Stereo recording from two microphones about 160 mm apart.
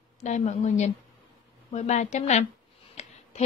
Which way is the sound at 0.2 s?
45° left (ahead or behind).